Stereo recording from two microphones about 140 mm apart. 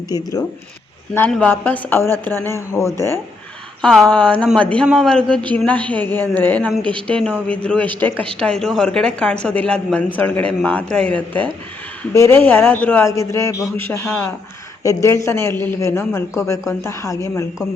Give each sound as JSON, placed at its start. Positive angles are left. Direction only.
{"t": 0.1, "sound": "a man's voice", "side_deg": 25}
{"t": 1.3, "sound": "speech", "side_deg": 10}
{"t": 3.8, "sound": "a man's voice", "side_deg": 5}